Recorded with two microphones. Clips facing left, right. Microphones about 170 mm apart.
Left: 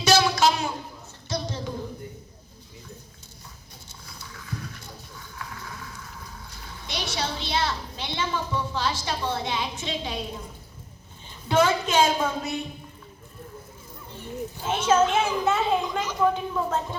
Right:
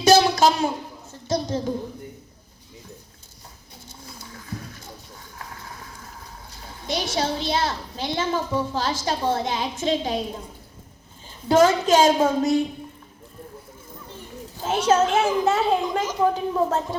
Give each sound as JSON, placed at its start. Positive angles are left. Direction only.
{"t": 0.3, "sound": "a sound", "side_deg": -50}
{"t": 1.3, "sound": "a child's voice", "side_deg": -50}
{"t": 5.1, "sound": "a sound", "side_deg": -35}
{"t": 6.7, "sound": "a child's voice", "side_deg": -45}
{"t": 11.4, "sound": "a woman's voice", "side_deg": -40}
{"t": 14.6, "sound": "a woman's voice", "side_deg": -40}